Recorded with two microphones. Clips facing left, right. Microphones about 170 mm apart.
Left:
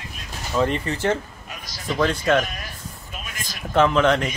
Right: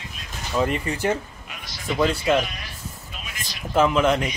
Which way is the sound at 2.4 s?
45° left (ahead or behind).